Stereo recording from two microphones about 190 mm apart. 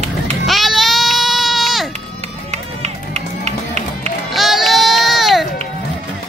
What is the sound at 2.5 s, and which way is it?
Music, 35° right (ahead or behind).